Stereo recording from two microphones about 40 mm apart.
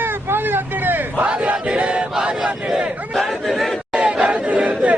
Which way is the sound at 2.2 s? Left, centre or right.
Right.